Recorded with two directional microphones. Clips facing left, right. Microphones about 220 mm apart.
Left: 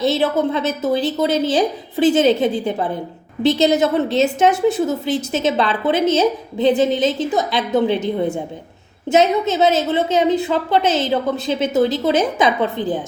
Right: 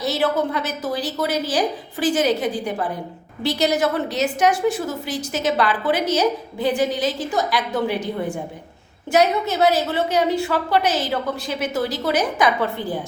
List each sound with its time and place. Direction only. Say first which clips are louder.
0.0 s a woman's voice: left 4 dB; 25° left (ahead or behind)